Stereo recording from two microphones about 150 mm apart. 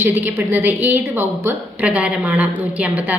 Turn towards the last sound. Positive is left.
turn(degrees=-10)  # may be behind; listen again after turning